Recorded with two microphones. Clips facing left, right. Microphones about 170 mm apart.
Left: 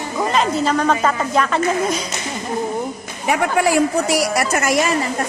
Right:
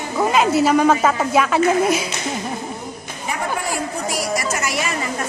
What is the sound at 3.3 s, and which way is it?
A woman's voice, 75° left (ahead or behind).